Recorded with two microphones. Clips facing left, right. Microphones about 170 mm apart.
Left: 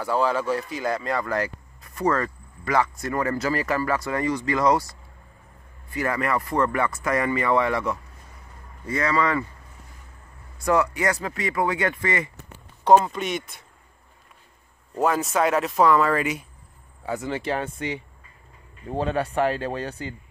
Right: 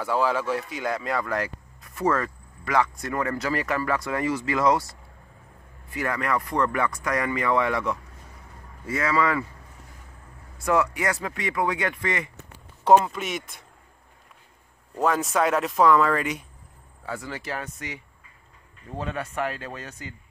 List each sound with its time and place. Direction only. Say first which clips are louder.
0.0 s speech: left 1 dB; centre (ahead or behind)
10.6 s speech: left 2 dB; centre (ahead or behind)
15.0 s speech: left 1 dB; 5° left (ahead or behind)
17.0 s speech: left 6 dB; 20° left (ahead or behind)